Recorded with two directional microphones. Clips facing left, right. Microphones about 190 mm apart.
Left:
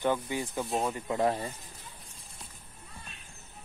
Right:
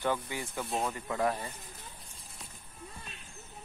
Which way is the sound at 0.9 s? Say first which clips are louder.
Left 3 dB; 25° left (ahead or behind).